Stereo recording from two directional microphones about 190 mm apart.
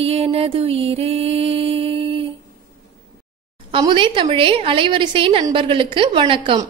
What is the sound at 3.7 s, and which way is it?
A woman's voice, 25° right (ahead or behind).